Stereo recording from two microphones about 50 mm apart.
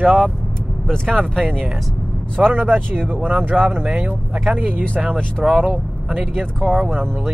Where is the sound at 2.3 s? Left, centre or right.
Right.